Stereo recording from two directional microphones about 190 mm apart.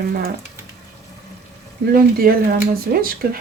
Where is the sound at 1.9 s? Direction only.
50° right (ahead or behind).